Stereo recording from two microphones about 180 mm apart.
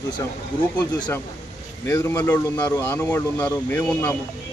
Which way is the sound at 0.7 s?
20° left (ahead or behind).